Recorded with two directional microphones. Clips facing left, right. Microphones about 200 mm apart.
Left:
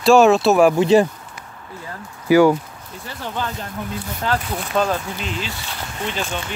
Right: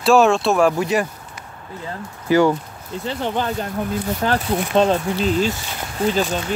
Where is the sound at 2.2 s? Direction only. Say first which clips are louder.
Left 3 dB; 10° left (ahead or behind).